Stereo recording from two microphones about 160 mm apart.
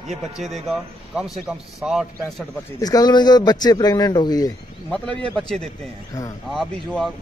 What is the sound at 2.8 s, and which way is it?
Speech, 25° left (ahead or behind).